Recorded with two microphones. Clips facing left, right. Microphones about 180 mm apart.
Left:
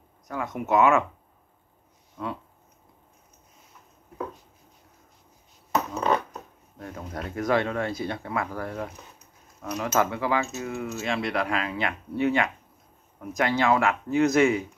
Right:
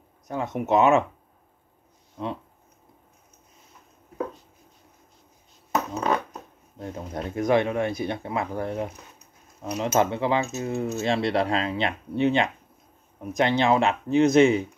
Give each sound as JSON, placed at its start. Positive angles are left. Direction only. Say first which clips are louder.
{"t": 0.3, "sound": "speech", "louder": "right 2 dB", "side_deg": -25}
{"t": 6.8, "sound": "speech", "louder": "right 3 dB", "side_deg": -20}